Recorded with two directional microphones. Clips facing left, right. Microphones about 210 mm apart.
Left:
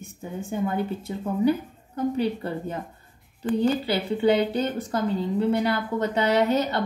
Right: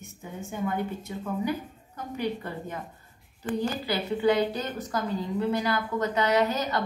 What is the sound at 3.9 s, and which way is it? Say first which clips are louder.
A woman's voice: left 3 dB; 30° left (ahead or behind).